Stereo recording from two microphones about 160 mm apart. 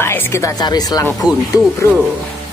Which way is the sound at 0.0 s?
15° left (ahead or behind).